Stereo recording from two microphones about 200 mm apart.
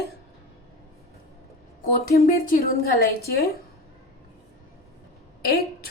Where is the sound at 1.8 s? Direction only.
45° left (ahead or behind).